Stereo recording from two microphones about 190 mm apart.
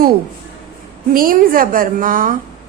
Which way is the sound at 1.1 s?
50° right (ahead or behind).